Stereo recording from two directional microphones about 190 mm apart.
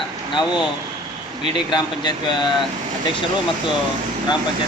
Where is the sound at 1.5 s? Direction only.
25° left (ahead or behind).